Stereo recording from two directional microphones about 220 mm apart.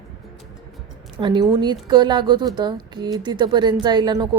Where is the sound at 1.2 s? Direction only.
20° right (ahead or behind).